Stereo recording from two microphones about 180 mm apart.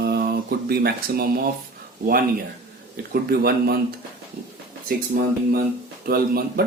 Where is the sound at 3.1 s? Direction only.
60° right (ahead or behind).